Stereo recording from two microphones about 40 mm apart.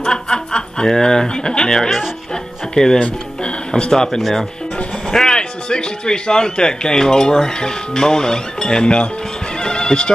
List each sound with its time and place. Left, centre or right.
0.0 s snicker: centre
0.8 s speech: centre
5.1 s speech: centre
9.6 s music: centre